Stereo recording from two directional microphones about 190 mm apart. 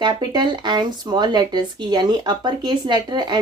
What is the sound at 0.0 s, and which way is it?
A woman's voice, 20° right (ahead or behind).